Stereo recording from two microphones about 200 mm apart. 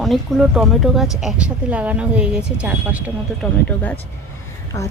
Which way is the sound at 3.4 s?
5° left (ahead or behind).